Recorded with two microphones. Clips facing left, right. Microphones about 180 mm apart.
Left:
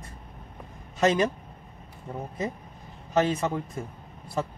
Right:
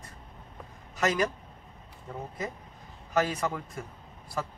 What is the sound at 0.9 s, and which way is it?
A man's voice, 25° left (ahead or behind).